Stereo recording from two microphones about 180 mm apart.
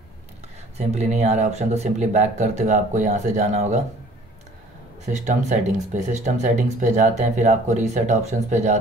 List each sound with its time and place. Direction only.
0.7 s speech: 40° right (ahead or behind)
5.0 s speech: 40° right (ahead or behind)